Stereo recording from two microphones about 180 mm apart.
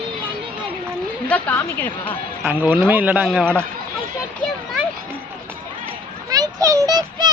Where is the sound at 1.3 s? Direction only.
10° left (ahead or behind).